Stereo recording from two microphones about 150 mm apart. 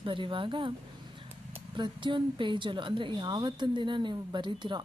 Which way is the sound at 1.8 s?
30° right (ahead or behind).